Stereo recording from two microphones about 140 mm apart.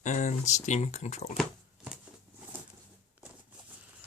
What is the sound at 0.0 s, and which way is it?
Speech, 60° left (ahead or behind).